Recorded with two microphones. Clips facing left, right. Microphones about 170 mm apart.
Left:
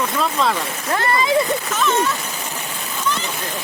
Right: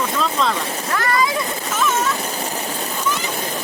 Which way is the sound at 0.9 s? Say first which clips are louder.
Left 2 dB; 25° left (ahead or behind).